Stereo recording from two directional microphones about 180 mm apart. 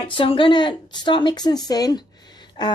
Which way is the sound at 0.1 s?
30° left (ahead or behind).